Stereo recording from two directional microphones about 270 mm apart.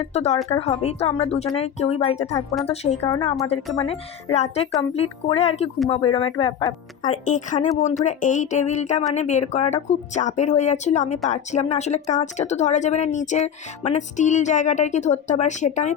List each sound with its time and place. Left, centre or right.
0.0 s speech: left
7.1 s speech: left